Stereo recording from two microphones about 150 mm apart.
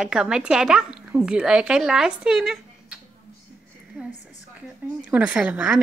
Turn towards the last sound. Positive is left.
turn(degrees=-10)  # may be behind; listen again after turning